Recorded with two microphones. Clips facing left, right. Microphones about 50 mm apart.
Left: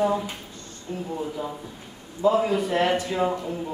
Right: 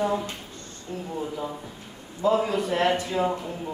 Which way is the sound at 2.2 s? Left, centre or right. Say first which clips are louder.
Left 2 dB; centre.